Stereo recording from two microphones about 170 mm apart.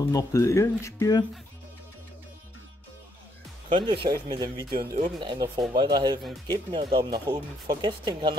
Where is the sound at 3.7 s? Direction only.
30° right (ahead or behind).